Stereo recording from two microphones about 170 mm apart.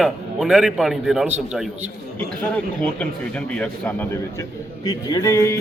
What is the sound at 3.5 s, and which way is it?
Speech, 10° left (ahead or behind).